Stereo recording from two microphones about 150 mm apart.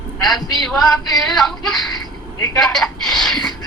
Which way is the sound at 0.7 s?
5° left (ahead or behind).